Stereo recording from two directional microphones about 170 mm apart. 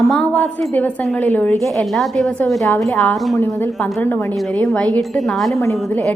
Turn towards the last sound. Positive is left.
turn(degrees=15)  # may be behind; listen again after turning